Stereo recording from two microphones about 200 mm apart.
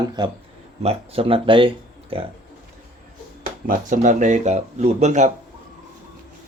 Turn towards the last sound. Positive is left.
turn(degrees=-35)  # may be behind; listen again after turning